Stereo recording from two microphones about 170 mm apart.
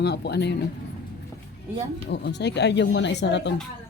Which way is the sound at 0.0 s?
75° left (ahead or behind).